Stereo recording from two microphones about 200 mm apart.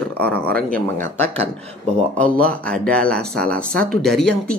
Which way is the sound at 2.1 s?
5° left (ahead or behind).